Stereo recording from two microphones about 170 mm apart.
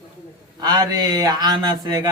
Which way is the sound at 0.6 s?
25° right (ahead or behind).